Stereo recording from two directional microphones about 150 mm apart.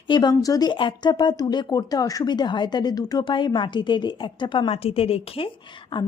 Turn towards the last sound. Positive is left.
turn(degrees=35)  # may be behind; listen again after turning